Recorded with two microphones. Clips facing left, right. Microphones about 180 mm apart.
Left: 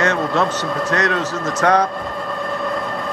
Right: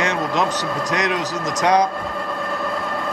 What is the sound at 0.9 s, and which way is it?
Speech, 15° right (ahead or behind).